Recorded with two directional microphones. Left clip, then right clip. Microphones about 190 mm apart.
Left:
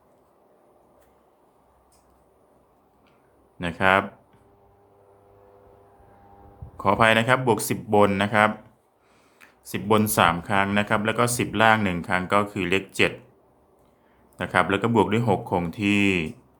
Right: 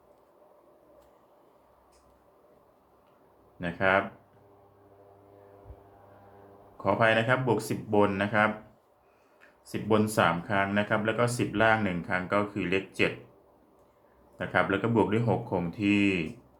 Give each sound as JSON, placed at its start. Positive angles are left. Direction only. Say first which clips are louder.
{"t": 3.6, "sound": "speech", "louder": "left 5 dB", "side_deg": 40}
{"t": 6.7, "sound": "speech", "louder": "left 5 dB", "side_deg": 40}
{"t": 9.6, "sound": "speech", "louder": "left 5 dB", "side_deg": 40}
{"t": 14.3, "sound": "speech", "louder": "left 5 dB", "side_deg": 40}